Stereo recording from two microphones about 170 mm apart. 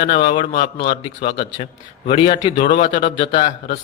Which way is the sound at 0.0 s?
30° left (ahead or behind).